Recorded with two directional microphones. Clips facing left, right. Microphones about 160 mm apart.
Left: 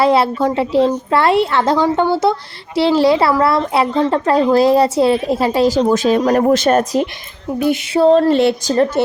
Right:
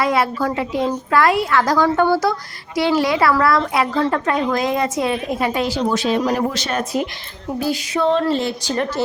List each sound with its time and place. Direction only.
0.0 s a woman's voice: 30° left (ahead or behind); by 7.0 s 45° left (ahead or behind)
7.7 s a woman's voice: 35° left (ahead or behind)
8.3 s a woman's voice: 70° left (ahead or behind)
8.6 s a woman's voice: 35° left (ahead or behind)